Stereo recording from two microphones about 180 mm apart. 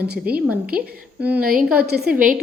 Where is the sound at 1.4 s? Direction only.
50° right (ahead or behind).